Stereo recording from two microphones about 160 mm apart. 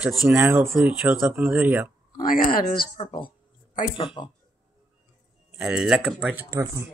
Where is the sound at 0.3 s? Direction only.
10° right (ahead or behind).